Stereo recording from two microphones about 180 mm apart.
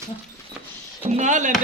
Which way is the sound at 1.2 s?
45° right (ahead or behind).